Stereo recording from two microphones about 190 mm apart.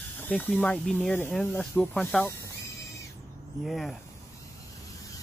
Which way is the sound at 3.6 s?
Centre (ahead or behind).